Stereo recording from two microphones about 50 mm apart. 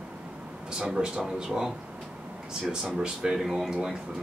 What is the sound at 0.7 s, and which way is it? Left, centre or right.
Speech, centre.